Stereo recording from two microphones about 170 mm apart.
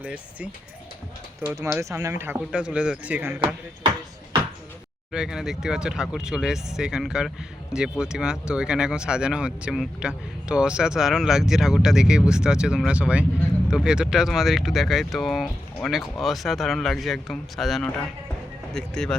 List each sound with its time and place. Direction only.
0.0 s speech: 5° right (ahead or behind)
3.4 s speech: 30° right (ahead or behind)
5.1 s speech: 5° right (ahead or behind)